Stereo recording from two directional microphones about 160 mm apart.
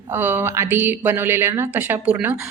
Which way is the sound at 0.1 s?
15° right (ahead or behind).